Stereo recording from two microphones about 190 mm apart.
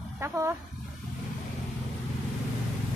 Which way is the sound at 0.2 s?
15° right (ahead or behind).